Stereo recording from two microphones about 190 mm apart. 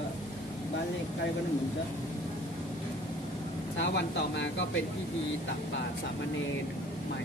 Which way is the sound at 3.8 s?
70° left (ahead or behind).